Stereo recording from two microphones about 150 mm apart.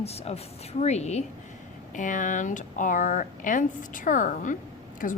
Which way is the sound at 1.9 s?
60° left (ahead or behind).